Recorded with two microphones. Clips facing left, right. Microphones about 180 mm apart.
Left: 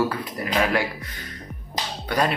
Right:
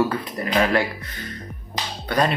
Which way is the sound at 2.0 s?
10° left (ahead or behind).